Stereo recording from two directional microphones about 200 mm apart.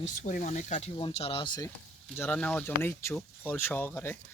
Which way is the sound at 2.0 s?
10° left (ahead or behind).